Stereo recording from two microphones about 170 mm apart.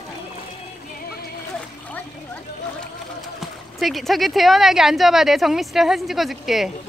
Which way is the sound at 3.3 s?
Centre (ahead or behind).